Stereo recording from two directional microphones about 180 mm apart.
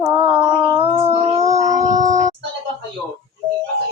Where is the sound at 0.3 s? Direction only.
25° right (ahead or behind).